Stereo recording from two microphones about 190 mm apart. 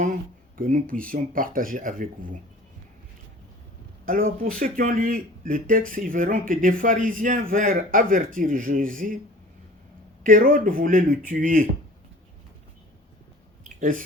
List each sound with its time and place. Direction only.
0.5 s speech: 45° right (ahead or behind)
4.0 s speech: 50° right (ahead or behind)
10.2 s speech: 45° right (ahead or behind)
13.7 s a sound: 45° right (ahead or behind)